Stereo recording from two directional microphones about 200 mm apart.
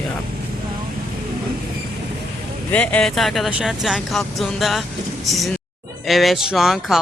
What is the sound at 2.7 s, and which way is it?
Speech, 5° left (ahead or behind).